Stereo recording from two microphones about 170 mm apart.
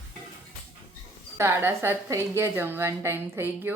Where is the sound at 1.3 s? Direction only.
15° right (ahead or behind).